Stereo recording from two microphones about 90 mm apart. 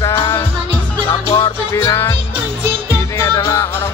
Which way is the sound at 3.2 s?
30° left (ahead or behind).